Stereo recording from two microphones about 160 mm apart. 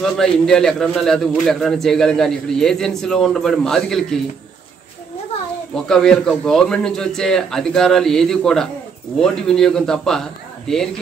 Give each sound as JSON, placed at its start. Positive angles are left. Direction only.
{"t": 0.0, "sound": "a man's voice", "side_deg": 5}
{"t": 5.9, "sound": "a man's voice", "side_deg": 5}